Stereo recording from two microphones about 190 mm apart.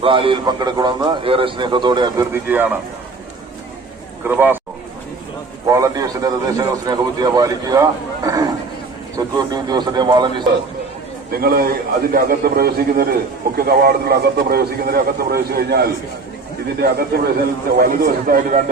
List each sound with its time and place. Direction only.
0.0 s a man's voice: 25° right (ahead or behind)
2.3 s speech: 10° right (ahead or behind)
4.2 s speech: 10° right (ahead or behind)
5.6 s a man's voice: 20° right (ahead or behind)
11.3 s a man's voice: 50° right (ahead or behind)